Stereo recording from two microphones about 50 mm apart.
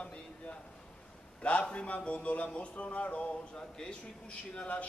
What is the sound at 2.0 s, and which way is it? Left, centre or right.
Speech, left.